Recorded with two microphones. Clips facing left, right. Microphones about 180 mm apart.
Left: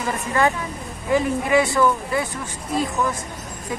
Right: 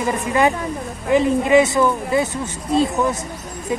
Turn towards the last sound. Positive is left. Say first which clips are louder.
# right 5 dB
turn(degrees=-25)  # may be behind; listen again after turning